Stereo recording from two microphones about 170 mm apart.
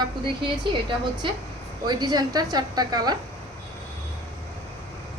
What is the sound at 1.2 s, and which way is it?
A woman's voice, 30° right (ahead or behind).